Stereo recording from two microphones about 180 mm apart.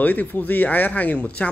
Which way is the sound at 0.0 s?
10° left (ahead or behind).